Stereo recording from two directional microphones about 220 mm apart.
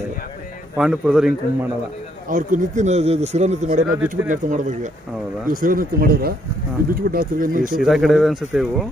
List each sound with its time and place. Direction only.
0.7 s speech: 5° right (ahead or behind)
2.2 s speech: 35° right (ahead or behind)
7.8 s speech: centre (ahead or behind)